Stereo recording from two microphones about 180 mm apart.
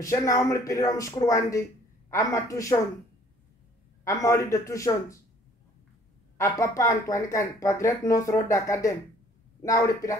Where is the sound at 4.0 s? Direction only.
15° left (ahead or behind).